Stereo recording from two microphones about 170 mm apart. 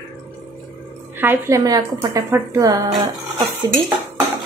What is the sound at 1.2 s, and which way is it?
Speech, 15° right (ahead or behind).